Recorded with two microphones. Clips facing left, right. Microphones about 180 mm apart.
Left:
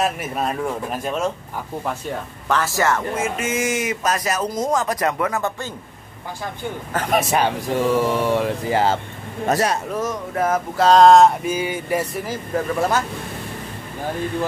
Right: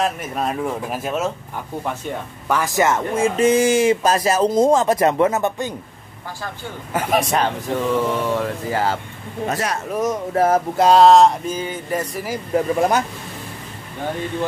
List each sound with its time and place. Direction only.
0.0 s speech: 5° left (ahead or behind); by 3.3 s 20° right (ahead or behind)
3.3 s speech: 35° right (ahead or behind); by 5.8 s 20° right (ahead or behind)
6.9 s speech: 10° right (ahead or behind)
7.2 s speech: 5° left (ahead or behind); by 9.0 s 20° left (ahead or behind)
9.5 s speech: 35° left (ahead or behind)
10.3 s a sound: 30° right (ahead or behind)
10.8 s speech: 5° right (ahead or behind); by 12.2 s 10° left (ahead or behind)
12.2 s speech: 15° right (ahead or behind)